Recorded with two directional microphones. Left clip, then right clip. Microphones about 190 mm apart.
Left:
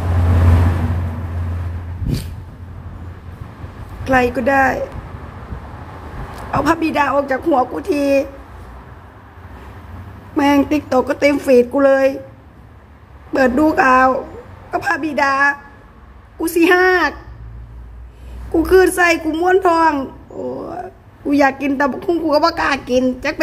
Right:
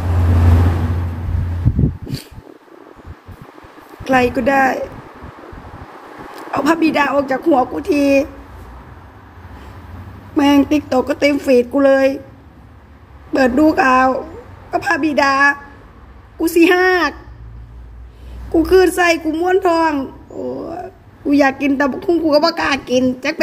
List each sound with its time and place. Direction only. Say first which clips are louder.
4.0 s speech: right 1 dB; 5° left (ahead or behind)
6.5 s speech: right 1 dB; 5° left (ahead or behind)
10.3 s speech: right 1 dB; 5° left (ahead or behind)
13.3 s speech: right 1 dB; 5° left (ahead or behind)
18.5 s a woman's voice: even; 5° left (ahead or behind)